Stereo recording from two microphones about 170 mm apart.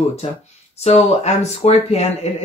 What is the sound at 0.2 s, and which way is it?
Speech, 35° left (ahead or behind).